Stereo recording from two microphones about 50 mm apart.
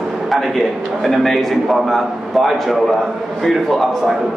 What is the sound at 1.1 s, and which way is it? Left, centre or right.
A man's voice, centre.